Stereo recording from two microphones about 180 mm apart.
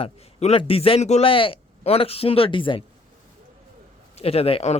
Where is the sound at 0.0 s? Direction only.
35° left (ahead or behind).